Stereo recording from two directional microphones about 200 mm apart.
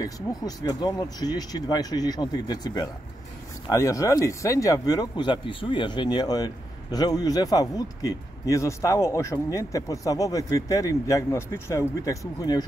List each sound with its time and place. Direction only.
0.0 s speech: 20° left (ahead or behind)